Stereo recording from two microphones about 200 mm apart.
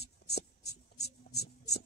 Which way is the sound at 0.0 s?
55° left (ahead or behind).